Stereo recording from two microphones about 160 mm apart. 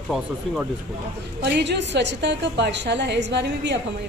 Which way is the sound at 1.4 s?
90° right.